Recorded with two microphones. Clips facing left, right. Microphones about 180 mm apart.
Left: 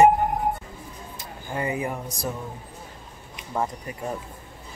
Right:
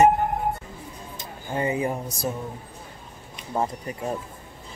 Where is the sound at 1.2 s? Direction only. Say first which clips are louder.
Right 2 dB; 25° right (ahead or behind).